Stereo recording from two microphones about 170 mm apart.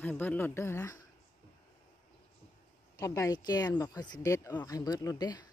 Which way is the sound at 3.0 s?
20° left (ahead or behind).